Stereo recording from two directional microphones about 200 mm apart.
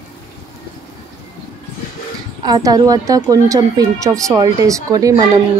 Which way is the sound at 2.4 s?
20° right (ahead or behind).